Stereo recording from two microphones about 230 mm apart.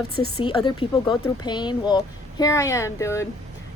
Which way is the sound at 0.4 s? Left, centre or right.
Left.